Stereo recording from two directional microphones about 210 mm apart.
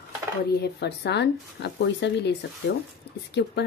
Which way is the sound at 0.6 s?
55° left (ahead or behind).